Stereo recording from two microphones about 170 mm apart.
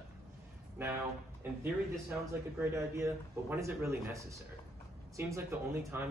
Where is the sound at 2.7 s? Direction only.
15° right (ahead or behind).